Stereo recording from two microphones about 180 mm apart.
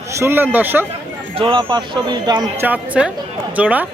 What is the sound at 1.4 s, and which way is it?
Speech, 25° right (ahead or behind).